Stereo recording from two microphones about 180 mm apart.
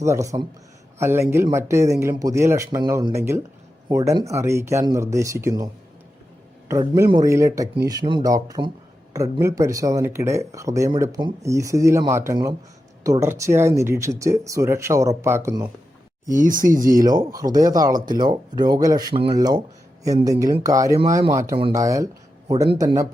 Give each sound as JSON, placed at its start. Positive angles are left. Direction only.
{"t": 0.0, "sound": "speech", "side_deg": -15}
{"t": 6.7, "sound": "speech", "side_deg": -15}
{"t": 16.3, "sound": "speech", "side_deg": -50}
{"t": 17.0, "sound": "speech", "side_deg": -20}